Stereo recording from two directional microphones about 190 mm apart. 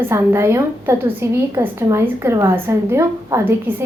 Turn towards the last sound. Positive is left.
turn(degrees=-15)  # may be behind; listen again after turning